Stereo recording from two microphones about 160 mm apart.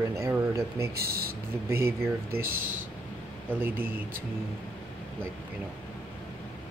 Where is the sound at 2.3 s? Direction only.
60° right (ahead or behind).